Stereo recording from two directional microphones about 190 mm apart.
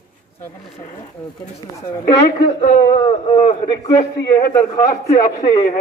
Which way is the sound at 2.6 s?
45° left (ahead or behind).